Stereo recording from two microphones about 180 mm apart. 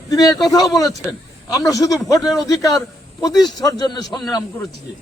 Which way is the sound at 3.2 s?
20° left (ahead or behind).